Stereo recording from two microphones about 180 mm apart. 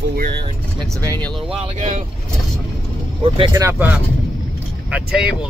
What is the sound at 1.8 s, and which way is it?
Speech, 40° right (ahead or behind).